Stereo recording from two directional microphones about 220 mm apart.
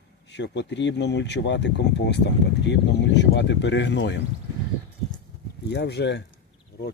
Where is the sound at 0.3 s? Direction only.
50° left (ahead or behind).